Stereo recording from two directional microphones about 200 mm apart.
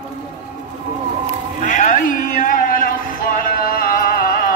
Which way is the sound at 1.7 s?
40° left (ahead or behind).